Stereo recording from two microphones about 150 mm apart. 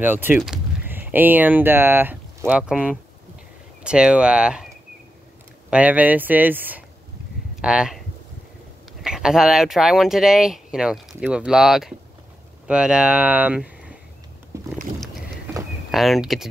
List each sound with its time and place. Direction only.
0.0 s speech: 15° right (ahead or behind)
5.7 s speech: 10° right (ahead or behind)
9.0 s speech: 5° right (ahead or behind)
14.5 s boat: 20° right (ahead or behind)
15.9 s speech: centre (ahead or behind)